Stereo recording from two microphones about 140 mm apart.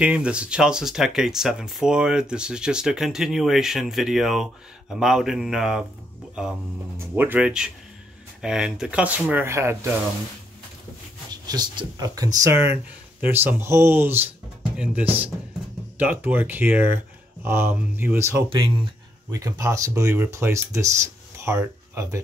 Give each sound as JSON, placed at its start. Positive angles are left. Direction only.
{"t": 0.0, "sound": "speech", "side_deg": -5}
{"t": 11.4, "sound": "speech", "side_deg": -30}